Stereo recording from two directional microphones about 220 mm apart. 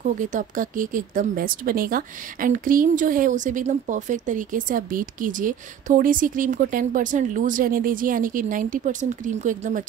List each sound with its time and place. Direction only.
0.0 s speech: 35° right (ahead or behind)